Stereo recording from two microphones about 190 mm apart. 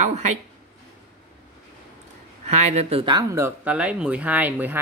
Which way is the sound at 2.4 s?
35° right (ahead or behind).